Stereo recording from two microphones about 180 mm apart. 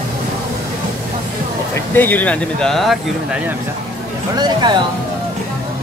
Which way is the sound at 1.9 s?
10° left (ahead or behind).